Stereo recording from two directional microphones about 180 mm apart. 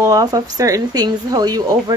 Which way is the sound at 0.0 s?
20° right (ahead or behind).